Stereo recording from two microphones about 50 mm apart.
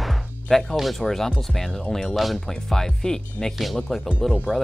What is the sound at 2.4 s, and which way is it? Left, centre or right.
Speech, centre.